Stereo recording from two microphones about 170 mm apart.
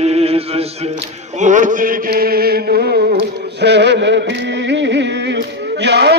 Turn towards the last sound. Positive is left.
turn(degrees=-80)